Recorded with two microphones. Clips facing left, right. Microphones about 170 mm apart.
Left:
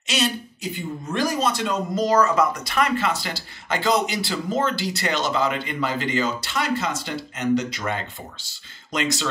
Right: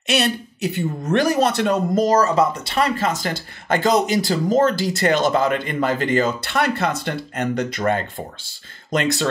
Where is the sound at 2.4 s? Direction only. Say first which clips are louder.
Right 3 dB; 30° right (ahead or behind).